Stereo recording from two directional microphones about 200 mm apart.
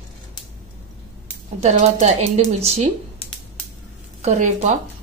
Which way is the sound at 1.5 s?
35° right (ahead or behind).